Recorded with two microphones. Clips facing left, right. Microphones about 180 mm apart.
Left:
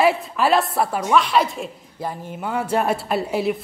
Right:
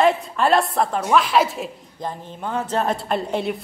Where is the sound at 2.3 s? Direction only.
10° left (ahead or behind).